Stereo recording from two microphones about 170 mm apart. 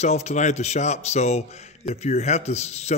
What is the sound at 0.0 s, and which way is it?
A man's voice, 40° left (ahead or behind).